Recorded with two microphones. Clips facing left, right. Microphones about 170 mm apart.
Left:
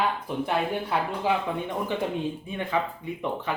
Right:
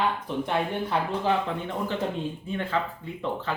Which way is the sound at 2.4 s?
15° left (ahead or behind).